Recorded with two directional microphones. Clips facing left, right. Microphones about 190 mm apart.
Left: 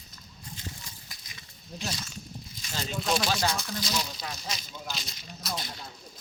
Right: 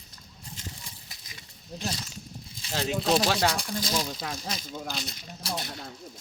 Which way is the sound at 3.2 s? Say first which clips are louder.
Right 3 dB; 70° right (ahead or behind).